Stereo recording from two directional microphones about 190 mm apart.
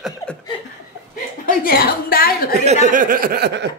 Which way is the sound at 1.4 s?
50° left (ahead or behind).